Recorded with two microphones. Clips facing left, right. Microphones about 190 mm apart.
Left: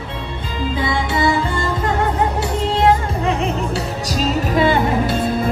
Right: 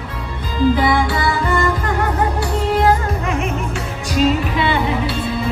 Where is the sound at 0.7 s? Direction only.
25° left (ahead or behind).